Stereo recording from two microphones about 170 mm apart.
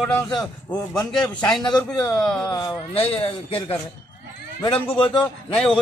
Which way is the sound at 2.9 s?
35° left (ahead or behind).